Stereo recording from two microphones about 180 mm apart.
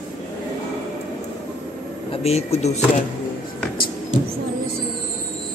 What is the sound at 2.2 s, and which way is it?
Speech, 35° left (ahead or behind).